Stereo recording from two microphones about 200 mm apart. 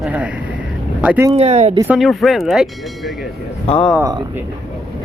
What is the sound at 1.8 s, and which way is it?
Speech, 5° right (ahead or behind).